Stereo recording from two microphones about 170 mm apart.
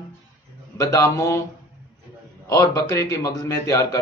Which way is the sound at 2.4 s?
20° left (ahead or behind).